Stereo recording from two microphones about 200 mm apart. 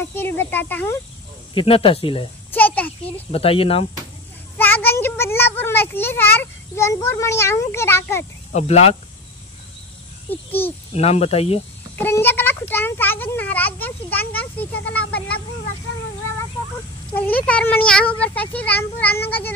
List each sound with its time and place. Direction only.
0.1 s a child's voice: 10° left (ahead or behind)
1.5 s speech: 25° left (ahead or behind)
2.5 s a sound: 10° left (ahead or behind)
3.3 s speech: 30° left (ahead or behind)
4.6 s a child's voice: 10° left (ahead or behind)
8.5 s speech: 35° left (ahead or behind)
11.0 s speech: 30° left (ahead or behind)
12.0 s a child's voice: 10° left (ahead or behind)
17.5 s a child's voice: 5° left (ahead or behind)